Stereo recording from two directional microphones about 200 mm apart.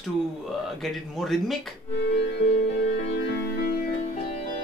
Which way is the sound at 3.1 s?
55° left (ahead or behind).